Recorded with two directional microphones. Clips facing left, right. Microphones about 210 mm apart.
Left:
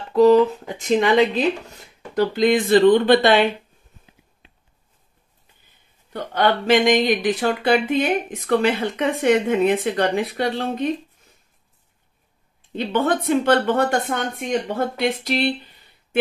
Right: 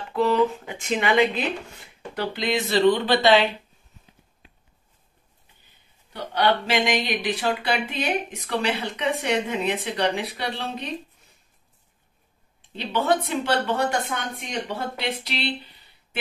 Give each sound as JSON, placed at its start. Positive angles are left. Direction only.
{"t": 0.1, "sound": "speech", "side_deg": 40}
{"t": 6.1, "sound": "speech", "side_deg": 50}
{"t": 12.7, "sound": "speech", "side_deg": 50}